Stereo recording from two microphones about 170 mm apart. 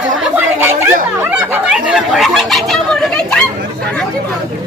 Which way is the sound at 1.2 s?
10° right (ahead or behind).